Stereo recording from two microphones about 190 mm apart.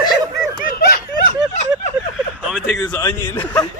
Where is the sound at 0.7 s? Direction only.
55° left (ahead or behind).